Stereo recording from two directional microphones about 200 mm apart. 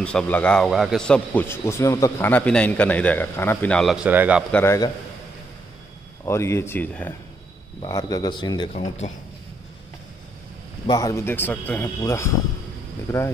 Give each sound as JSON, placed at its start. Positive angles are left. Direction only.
{"t": 0.0, "sound": "speech", "side_deg": 5}
{"t": 4.5, "sound": "speech", "side_deg": 10}
{"t": 6.2, "sound": "speech", "side_deg": 15}
{"t": 7.8, "sound": "speech", "side_deg": 20}
{"t": 10.9, "sound": "speech", "side_deg": 15}